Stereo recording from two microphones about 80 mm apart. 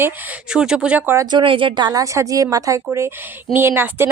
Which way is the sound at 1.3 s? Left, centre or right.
Right.